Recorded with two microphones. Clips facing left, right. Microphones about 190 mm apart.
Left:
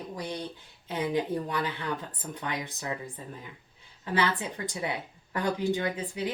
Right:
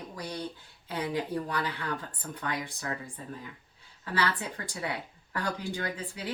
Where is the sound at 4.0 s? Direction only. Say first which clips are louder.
Left 3 dB; 20° left (ahead or behind).